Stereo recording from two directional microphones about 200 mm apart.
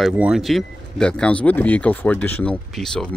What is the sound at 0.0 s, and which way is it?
Speech, 5° right (ahead or behind).